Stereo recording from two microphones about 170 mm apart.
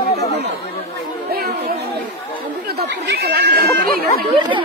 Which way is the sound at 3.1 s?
75° right (ahead or behind).